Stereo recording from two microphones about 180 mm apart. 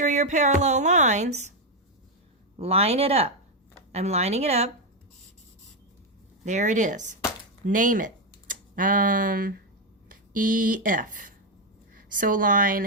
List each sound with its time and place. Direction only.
0.0 s a woman's voice: 40° right (ahead or behind)
2.6 s a woman's voice: 35° right (ahead or behind)
6.4 s speech: 40° right (ahead or behind)